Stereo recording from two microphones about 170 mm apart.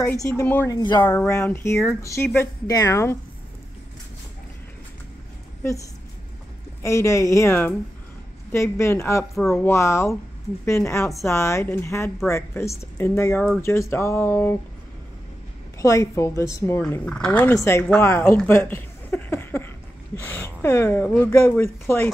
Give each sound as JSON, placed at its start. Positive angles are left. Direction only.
{"t": 0.0, "sound": "a woman's voice", "side_deg": 15}
{"t": 0.7, "sound": "speech", "side_deg": 25}
{"t": 6.8, "sound": "speech", "side_deg": 20}
{"t": 15.8, "sound": "speech", "side_deg": 20}